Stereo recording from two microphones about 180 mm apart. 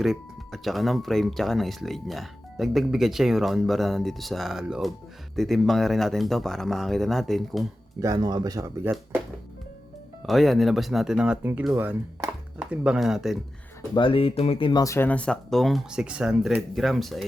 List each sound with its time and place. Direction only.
0.0 s speech: centre (ahead or behind)
8.0 s speech: 20° right (ahead or behind)
10.2 s speech: centre (ahead or behind)
13.9 s speech: 30° left (ahead or behind); by 17.2 s centre (ahead or behind)